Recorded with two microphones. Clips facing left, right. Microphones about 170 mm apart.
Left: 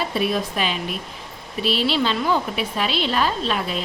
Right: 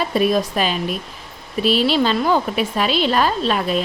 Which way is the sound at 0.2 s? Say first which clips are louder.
Right 6 dB; 40° right (ahead or behind).